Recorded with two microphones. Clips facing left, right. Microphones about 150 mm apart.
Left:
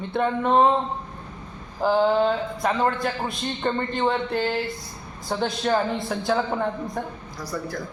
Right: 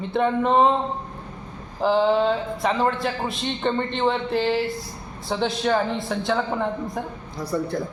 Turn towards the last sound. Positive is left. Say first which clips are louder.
# right 5 dB
turn(degrees=-25)  # may be behind; listen again after turning